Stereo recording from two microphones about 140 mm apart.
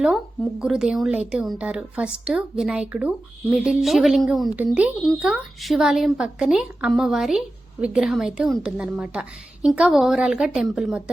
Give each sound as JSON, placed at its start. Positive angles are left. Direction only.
{"t": 0.6, "sound": "a woman's voice", "side_deg": -5}